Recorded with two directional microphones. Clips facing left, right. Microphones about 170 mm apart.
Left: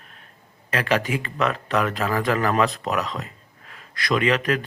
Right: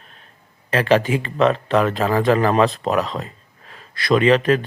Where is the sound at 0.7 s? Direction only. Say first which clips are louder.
Right 6 dB; 30° right (ahead or behind).